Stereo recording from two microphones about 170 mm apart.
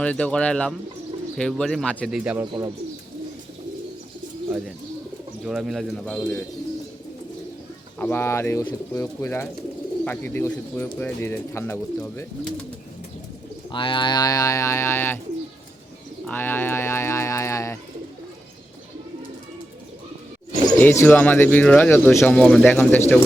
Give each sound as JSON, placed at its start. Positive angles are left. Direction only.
{"t": 0.0, "sound": "speech", "side_deg": 5}
{"t": 2.0, "sound": "speech", "side_deg": -5}
{"t": 2.4, "sound": "speech", "side_deg": -20}
{"t": 5.5, "sound": "speech", "side_deg": 0}
{"t": 7.9, "sound": "speech", "side_deg": 10}
{"t": 13.7, "sound": "speech", "side_deg": 30}
{"t": 16.2, "sound": "speech", "side_deg": 10}
{"t": 20.7, "sound": "speech", "side_deg": 10}